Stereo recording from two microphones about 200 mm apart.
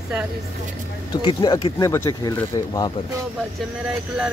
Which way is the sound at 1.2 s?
20° left (ahead or behind).